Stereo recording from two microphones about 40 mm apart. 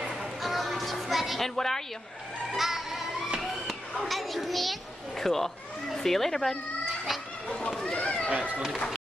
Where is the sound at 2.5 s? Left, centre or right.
Centre.